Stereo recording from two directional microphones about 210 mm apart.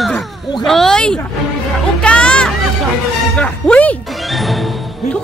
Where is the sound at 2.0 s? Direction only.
5° left (ahead or behind).